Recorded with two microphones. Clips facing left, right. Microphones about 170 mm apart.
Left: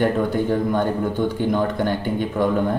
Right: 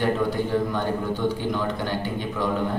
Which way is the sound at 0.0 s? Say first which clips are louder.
Left 4 dB; 50° left (ahead or behind).